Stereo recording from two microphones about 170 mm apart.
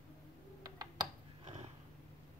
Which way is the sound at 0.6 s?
25° right (ahead or behind).